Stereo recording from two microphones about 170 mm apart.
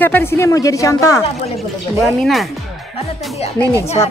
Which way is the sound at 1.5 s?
Centre (ahead or behind).